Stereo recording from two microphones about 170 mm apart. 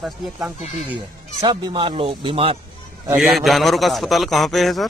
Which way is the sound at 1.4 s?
25° right (ahead or behind).